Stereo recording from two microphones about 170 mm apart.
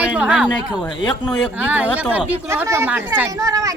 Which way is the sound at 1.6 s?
10° right (ahead or behind).